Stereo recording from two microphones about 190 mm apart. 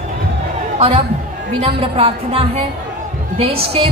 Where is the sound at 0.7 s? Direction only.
30° right (ahead or behind).